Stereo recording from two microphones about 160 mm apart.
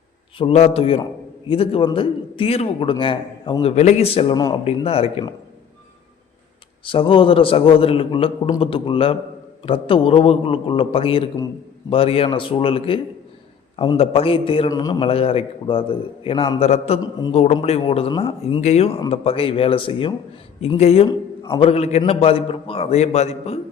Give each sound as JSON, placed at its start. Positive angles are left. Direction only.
{"t": 0.3, "sound": "a man's voice", "side_deg": 40}
{"t": 4.4, "sound": "a man's voice", "side_deg": 25}
{"t": 4.6, "sound": "a man's voice", "side_deg": 40}
{"t": 6.8, "sound": "a man's voice", "side_deg": 30}
{"t": 14.7, "sound": "a man's voice", "side_deg": 25}
{"t": 15.0, "sound": "a man's voice", "side_deg": 35}
{"t": 17.0, "sound": "a man's voice", "side_deg": 25}
{"t": 17.3, "sound": "a man's voice", "side_deg": 40}